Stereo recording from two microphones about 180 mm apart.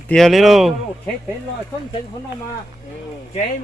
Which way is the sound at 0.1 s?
Centre (ahead or behind).